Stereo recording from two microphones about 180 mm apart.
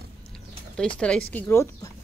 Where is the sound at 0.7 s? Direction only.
5° left (ahead or behind).